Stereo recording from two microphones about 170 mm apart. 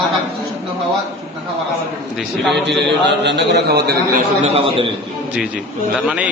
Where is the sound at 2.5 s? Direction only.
90° right; by 3.9 s 75° right (ahead or behind).